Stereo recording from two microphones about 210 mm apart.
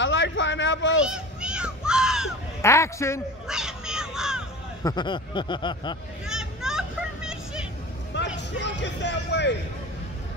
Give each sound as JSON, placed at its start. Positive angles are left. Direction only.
{"t": 0.0, "sound": "a sound", "side_deg": 60}
{"t": 1.0, "sound": "a sound", "side_deg": -5}
{"t": 2.6, "sound": "a man's voice", "side_deg": 15}
{"t": 3.4, "sound": "crow", "side_deg": -5}
{"t": 4.8, "sound": "speech", "side_deg": 20}
{"t": 6.2, "sound": "vehicle", "side_deg": -5}
{"t": 8.4, "sound": "speech", "side_deg": 55}